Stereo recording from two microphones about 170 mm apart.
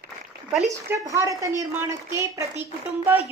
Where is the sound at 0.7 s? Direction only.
20° right (ahead or behind).